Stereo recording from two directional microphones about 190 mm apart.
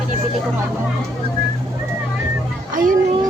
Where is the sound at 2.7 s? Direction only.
45° right (ahead or behind).